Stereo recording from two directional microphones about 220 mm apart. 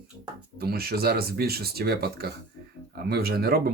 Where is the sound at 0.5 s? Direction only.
45° right (ahead or behind).